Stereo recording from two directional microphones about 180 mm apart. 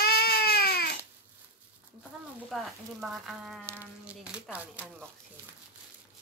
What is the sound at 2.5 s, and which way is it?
Speech, centre (ahead or behind).